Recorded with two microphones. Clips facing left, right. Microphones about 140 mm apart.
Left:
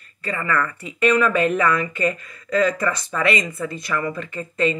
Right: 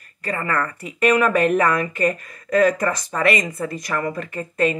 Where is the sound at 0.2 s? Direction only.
50° right (ahead or behind).